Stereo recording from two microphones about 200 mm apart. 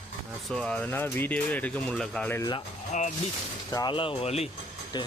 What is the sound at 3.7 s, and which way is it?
Speech, 20° left (ahead or behind).